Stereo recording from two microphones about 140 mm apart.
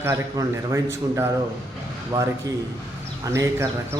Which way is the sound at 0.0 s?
25° right (ahead or behind).